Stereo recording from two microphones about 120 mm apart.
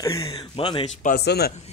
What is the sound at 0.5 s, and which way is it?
Speech, 50° left (ahead or behind).